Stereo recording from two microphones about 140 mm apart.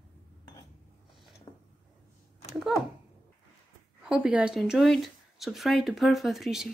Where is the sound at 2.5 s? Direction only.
5° right (ahead or behind).